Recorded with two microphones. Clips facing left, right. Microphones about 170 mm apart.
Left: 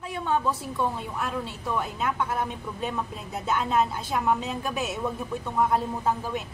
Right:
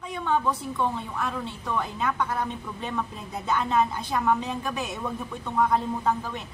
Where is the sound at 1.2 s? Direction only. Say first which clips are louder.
Even; 10° left (ahead or behind).